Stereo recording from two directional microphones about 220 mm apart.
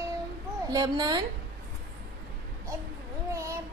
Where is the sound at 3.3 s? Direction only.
15° right (ahead or behind).